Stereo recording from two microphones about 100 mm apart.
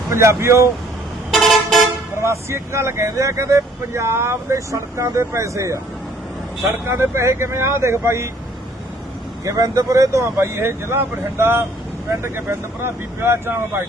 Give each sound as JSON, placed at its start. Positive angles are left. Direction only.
{"t": 0.1, "sound": "speech", "side_deg": -30}
{"t": 1.3, "sound": "vehicle", "side_deg": 0}
{"t": 2.1, "sound": "speech", "side_deg": -30}
{"t": 6.8, "sound": "speech", "side_deg": -25}
{"t": 9.4, "sound": "speech", "side_deg": -30}